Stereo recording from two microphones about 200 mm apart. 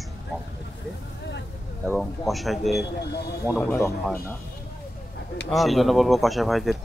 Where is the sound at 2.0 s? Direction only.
Centre (ahead or behind).